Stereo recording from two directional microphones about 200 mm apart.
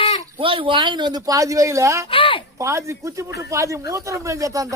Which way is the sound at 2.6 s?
15° right (ahead or behind).